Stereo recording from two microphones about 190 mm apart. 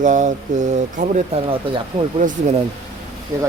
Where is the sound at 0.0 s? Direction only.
40° right (ahead or behind).